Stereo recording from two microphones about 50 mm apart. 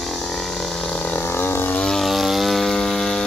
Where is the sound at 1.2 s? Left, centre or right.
Left.